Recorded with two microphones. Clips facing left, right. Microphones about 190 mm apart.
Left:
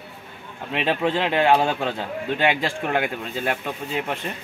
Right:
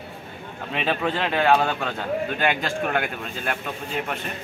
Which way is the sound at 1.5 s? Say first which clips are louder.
Left 1 dB; 25° left (ahead or behind).